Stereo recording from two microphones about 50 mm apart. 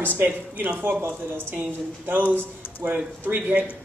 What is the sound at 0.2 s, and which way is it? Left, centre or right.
Speech, right.